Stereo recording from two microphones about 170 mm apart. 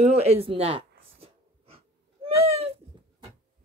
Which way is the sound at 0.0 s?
40° right (ahead or behind).